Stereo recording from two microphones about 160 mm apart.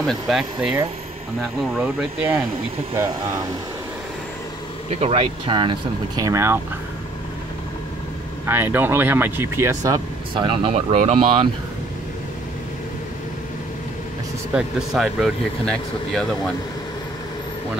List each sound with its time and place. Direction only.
0.0 s speech: centre (ahead or behind)
4.9 s speech: 40° right (ahead or behind); by 6.6 s 15° right (ahead or behind)
8.5 s speech: 15° right (ahead or behind)
10.3 s speech: 30° right (ahead or behind)
14.5 s speech: centre (ahead or behind)